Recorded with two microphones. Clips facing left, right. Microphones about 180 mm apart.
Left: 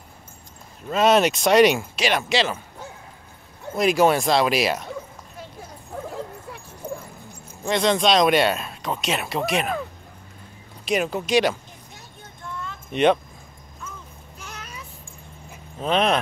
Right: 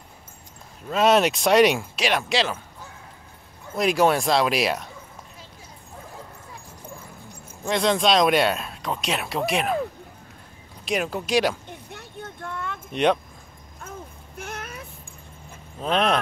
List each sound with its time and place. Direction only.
0.8 s speech: centre (ahead or behind)
3.7 s speech: centre (ahead or behind)
6.0 s dog: 70° left (ahead or behind)
7.6 s speech: centre (ahead or behind)
10.9 s speech: centre (ahead or behind)
11.7 s a sound: 65° right (ahead or behind)
12.9 s speech: centre (ahead or behind)
13.8 s a sound: 55° right (ahead or behind)
15.8 s speech: centre (ahead or behind)